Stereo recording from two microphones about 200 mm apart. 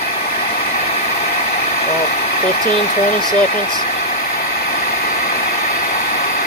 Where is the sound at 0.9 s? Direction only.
30° left (ahead or behind).